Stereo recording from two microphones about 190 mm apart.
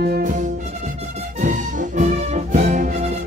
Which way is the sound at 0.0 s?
45° right (ahead or behind).